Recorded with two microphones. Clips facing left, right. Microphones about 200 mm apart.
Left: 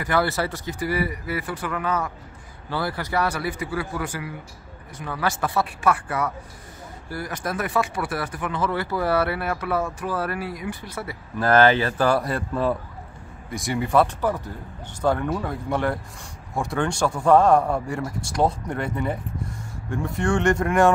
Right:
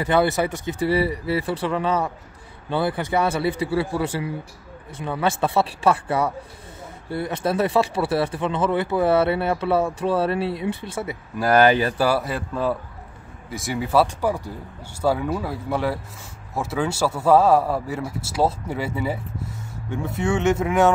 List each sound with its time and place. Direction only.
0.0 s speech: 20° right (ahead or behind)
11.3 s speech: 10° right (ahead or behind)